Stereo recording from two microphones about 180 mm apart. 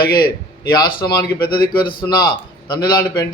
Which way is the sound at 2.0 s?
25° left (ahead or behind).